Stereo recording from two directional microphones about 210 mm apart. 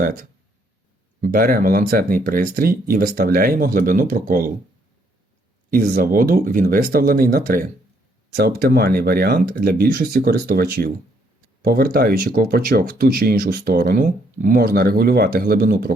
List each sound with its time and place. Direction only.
0.0 s speech: 45° right (ahead or behind)
5.7 s speech: 40° right (ahead or behind)